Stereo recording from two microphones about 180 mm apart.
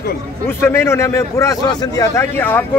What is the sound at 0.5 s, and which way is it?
Speech, 15° left (ahead or behind).